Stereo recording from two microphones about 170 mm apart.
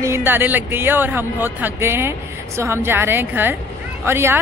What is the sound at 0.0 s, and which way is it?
Speech, 15° right (ahead or behind).